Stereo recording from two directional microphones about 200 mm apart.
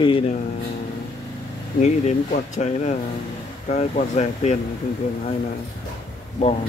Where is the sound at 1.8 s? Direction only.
35° left (ahead or behind).